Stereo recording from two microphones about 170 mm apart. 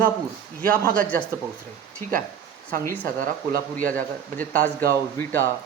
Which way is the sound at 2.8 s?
10° left (ahead or behind).